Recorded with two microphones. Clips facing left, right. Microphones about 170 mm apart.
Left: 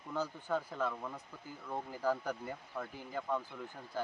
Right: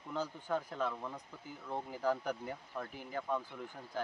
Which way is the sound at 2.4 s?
5° left (ahead or behind).